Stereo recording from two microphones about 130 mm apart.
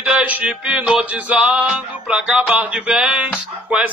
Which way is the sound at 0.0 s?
10° right (ahead or behind).